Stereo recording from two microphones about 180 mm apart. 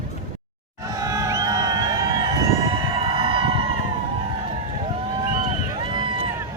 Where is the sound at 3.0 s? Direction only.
30° right (ahead or behind).